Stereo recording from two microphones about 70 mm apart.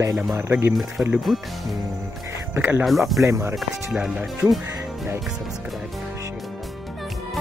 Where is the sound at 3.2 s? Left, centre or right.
Right.